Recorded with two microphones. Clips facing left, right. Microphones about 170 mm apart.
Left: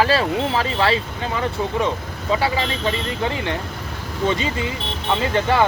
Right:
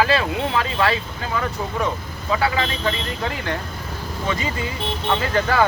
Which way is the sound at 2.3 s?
25° left (ahead or behind).